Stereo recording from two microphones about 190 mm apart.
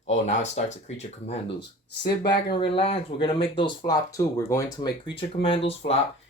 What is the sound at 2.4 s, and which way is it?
Speech, 25° left (ahead or behind).